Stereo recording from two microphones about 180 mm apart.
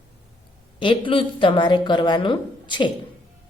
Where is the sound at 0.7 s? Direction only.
30° left (ahead or behind).